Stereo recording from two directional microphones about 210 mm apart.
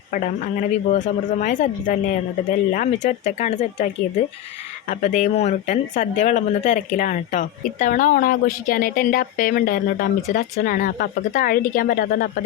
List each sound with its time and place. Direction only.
0.9 s speech: 35° left (ahead or behind)
4.9 s speech: 35° left (ahead or behind)